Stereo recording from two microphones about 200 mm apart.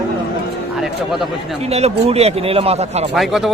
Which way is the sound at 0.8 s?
Centre (ahead or behind).